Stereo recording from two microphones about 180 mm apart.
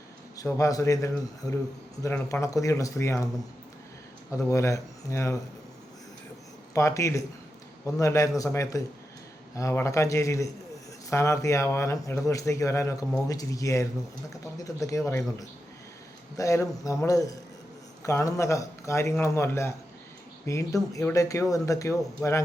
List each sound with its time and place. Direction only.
0.3 s speech: 15° left (ahead or behind)
4.3 s speech: 15° left (ahead or behind)
6.7 s speech: 15° left (ahead or behind)